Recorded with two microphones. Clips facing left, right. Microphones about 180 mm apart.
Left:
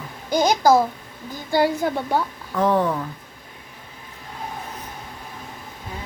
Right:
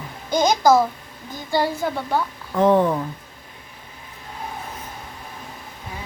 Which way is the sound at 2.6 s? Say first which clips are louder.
Right 3 dB; 20° right (ahead or behind).